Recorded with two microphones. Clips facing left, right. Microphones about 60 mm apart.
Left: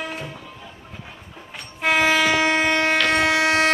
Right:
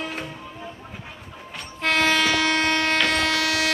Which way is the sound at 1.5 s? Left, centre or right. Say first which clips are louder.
Left 3 dB; centre.